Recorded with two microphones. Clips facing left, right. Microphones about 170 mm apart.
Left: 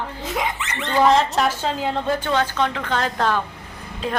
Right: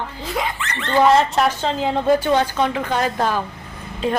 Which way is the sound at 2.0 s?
10° right (ahead or behind).